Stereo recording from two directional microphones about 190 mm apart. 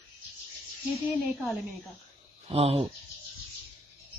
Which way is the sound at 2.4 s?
30° right (ahead or behind).